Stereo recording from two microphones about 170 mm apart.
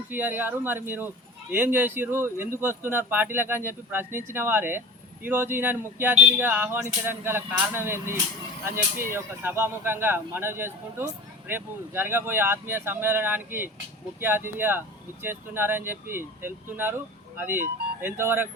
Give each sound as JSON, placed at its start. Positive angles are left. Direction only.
{"t": 0.1, "sound": "speech", "side_deg": -10}